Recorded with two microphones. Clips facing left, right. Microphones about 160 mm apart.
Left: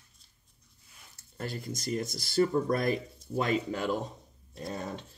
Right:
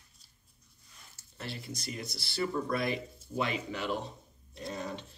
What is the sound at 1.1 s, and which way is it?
Speech, 45° left (ahead or behind).